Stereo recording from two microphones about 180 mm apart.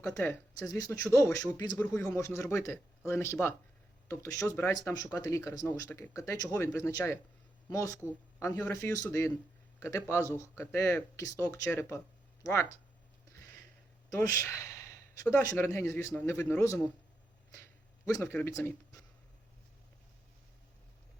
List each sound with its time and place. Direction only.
0.2 s speech: 10° left (ahead or behind)
14.1 s speech: 15° left (ahead or behind)
18.0 s speech: 15° left (ahead or behind)